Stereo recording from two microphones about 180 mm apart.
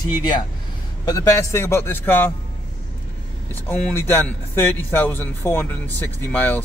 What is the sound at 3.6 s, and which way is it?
Speech, 10° left (ahead or behind).